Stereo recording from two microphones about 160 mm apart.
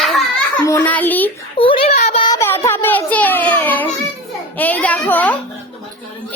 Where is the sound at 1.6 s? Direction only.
35° left (ahead or behind).